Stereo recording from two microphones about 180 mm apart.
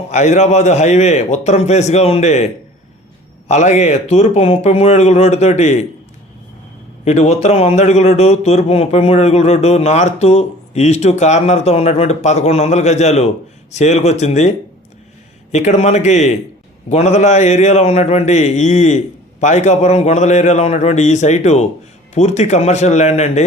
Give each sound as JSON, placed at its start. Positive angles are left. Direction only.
{"t": 0.1, "sound": "a man's voice", "side_deg": 40}
{"t": 3.5, "sound": "a man's voice", "side_deg": 40}
{"t": 7.0, "sound": "a man's voice", "side_deg": 40}
{"t": 15.5, "sound": "a man's voice", "side_deg": 40}